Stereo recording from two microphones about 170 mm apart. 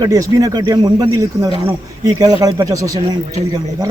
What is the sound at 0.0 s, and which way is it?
A man's voice, 20° right (ahead or behind).